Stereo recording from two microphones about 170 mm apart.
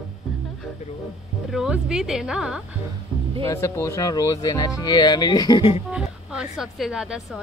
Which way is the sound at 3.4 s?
15° left (ahead or behind).